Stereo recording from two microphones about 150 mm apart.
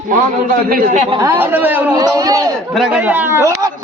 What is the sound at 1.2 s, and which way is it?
Speech, 15° right (ahead or behind).